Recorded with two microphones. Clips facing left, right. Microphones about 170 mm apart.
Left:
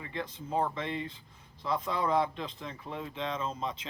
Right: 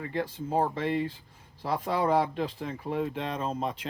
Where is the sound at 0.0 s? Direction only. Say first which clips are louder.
Right 7 dB; 50° right (ahead or behind).